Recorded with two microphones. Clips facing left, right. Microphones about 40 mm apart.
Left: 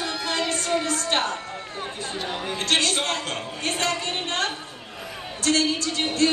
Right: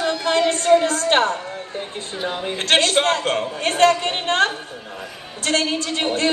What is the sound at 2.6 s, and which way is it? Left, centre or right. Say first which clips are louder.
A woman's voice: right 7 dB; right.